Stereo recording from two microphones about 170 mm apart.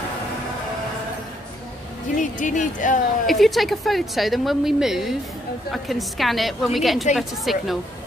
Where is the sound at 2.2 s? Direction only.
45° left (ahead or behind).